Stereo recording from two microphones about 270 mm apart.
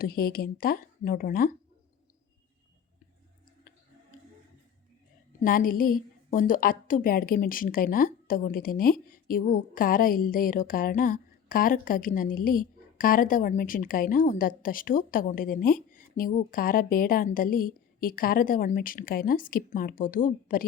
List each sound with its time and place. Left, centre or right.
0.0 s a woman's voice: left
5.4 s a woman's voice: left